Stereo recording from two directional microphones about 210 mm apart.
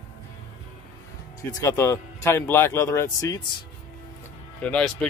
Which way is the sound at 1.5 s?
10° left (ahead or behind).